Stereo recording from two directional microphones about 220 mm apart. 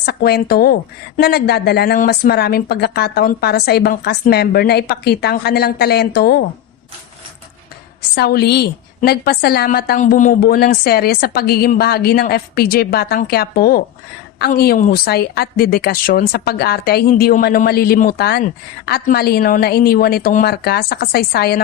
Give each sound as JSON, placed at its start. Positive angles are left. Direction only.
{"t": 0.0, "sound": "a woman's voice", "side_deg": 45}
{"t": 8.1, "sound": "a woman's voice", "side_deg": 45}